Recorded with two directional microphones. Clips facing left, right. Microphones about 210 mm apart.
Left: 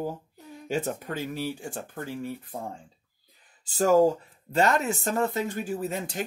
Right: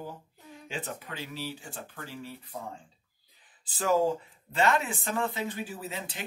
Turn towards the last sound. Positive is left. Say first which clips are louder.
# left 8 dB
turn(degrees=45)  # may be behind; listen again after turning